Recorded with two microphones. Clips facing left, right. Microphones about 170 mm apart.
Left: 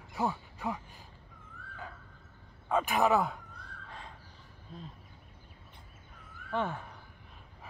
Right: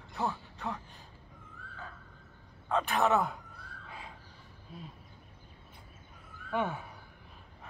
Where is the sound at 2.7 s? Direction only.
5° left (ahead or behind).